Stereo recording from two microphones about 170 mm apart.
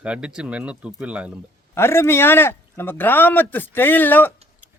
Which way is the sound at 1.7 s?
15° left (ahead or behind).